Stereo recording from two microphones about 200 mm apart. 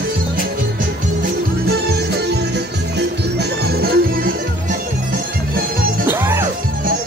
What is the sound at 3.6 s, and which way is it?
Music, 50° right (ahead or behind).